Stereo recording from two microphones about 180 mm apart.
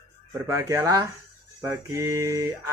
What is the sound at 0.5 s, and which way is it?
Speech, 20° right (ahead or behind).